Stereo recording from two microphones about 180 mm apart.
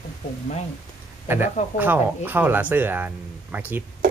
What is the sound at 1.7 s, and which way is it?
Speech, 10° right (ahead or behind).